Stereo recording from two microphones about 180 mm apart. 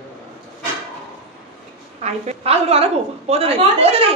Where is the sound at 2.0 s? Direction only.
35° right (ahead or behind).